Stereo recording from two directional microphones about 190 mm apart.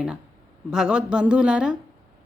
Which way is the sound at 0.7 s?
5° right (ahead or behind).